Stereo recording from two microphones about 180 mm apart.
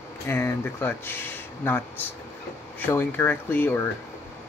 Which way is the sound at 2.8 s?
10° left (ahead or behind).